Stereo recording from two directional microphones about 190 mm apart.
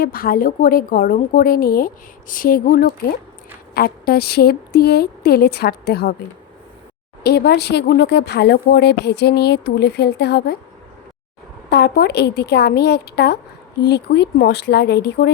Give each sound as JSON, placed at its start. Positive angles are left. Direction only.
{"t": 0.0, "sound": "a woman's voice", "side_deg": 50}
{"t": 11.7, "sound": "a woman's voice", "side_deg": 60}